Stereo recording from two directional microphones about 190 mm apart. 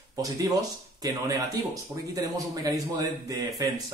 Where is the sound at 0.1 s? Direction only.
20° right (ahead or behind).